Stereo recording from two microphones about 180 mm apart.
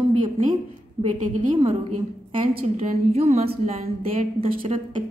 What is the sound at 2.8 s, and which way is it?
Speech, 35° right (ahead or behind).